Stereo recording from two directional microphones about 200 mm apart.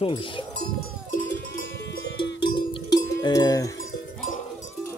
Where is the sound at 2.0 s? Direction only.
60° left (ahead or behind).